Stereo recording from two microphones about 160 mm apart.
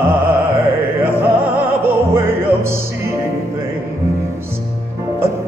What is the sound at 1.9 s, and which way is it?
Music, 15° right (ahead or behind).